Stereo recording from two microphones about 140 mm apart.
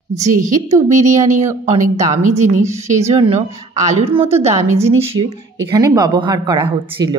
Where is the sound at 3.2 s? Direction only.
40° right (ahead or behind).